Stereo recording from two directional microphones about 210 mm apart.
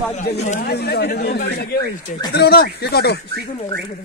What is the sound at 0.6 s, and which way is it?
Speech, 50° left (ahead or behind).